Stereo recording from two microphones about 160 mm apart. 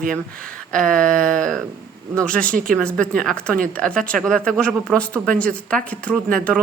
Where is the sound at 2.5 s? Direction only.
60° right (ahead or behind).